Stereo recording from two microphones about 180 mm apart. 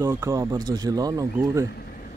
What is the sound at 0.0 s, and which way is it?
Speech, 15° right (ahead or behind).